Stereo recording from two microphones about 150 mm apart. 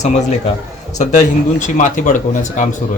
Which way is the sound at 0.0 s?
50° left (ahead or behind).